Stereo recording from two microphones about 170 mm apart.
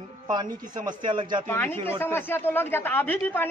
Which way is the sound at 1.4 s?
15° left (ahead or behind).